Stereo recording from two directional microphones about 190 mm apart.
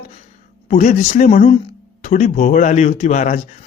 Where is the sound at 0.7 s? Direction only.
40° left (ahead or behind).